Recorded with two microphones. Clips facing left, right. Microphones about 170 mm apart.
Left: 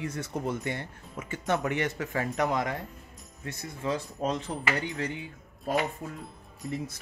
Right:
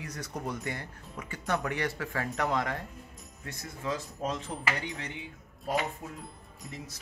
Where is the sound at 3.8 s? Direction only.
35° left (ahead or behind).